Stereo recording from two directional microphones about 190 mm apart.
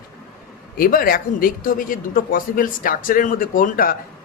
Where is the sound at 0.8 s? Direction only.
50° left (ahead or behind).